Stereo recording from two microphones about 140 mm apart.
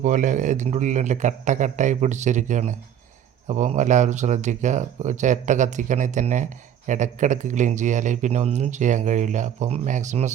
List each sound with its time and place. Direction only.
0.0 s speech: 65° right (ahead or behind)